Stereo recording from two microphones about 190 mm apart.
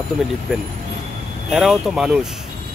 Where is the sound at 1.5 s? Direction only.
Centre (ahead or behind).